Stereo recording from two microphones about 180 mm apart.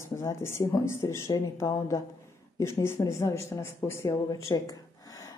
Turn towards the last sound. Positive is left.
turn(degrees=20)  # may be behind; listen again after turning